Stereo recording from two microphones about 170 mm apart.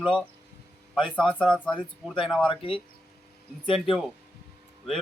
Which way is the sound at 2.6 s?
30° left (ahead or behind).